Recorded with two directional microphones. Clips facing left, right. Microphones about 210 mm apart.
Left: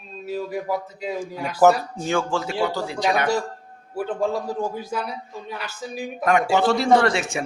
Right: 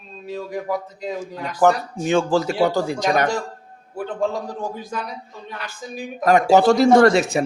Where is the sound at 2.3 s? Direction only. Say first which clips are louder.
Right 5 dB; 40° right (ahead or behind).